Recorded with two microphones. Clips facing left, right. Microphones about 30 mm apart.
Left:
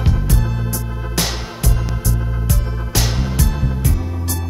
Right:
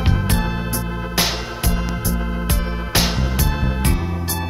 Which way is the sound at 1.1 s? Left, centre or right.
Centre.